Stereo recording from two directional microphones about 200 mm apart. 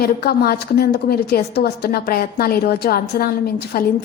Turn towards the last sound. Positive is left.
turn(degrees=50)  # may be behind; listen again after turning